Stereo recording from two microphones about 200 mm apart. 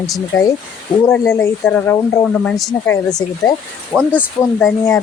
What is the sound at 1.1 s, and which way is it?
Speech, 10° left (ahead or behind).